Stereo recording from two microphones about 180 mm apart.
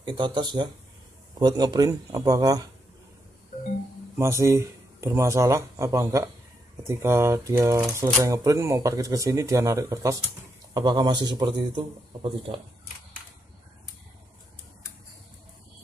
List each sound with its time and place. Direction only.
0.0 s speech: 25° right (ahead or behind)
4.2 s speech: 15° right (ahead or behind)